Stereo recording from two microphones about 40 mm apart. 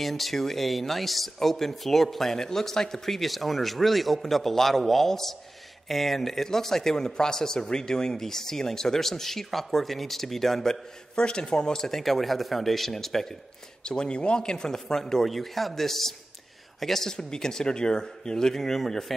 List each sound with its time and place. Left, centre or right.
0.0 s speech: centre
12.0 s speech: centre
13.8 s speech: left; by 19.1 s centre